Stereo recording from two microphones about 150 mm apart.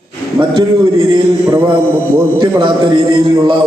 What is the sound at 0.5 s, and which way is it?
Speech, 35° right (ahead or behind).